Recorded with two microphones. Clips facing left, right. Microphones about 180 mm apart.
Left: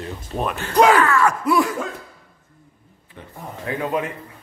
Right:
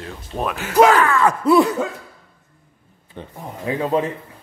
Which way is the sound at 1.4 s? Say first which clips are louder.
Right 5 dB; 30° right (ahead or behind).